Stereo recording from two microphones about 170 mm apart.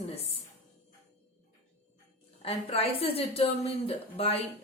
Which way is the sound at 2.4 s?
35° left (ahead or behind).